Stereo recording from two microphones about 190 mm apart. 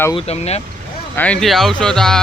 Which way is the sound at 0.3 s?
35° left (ahead or behind).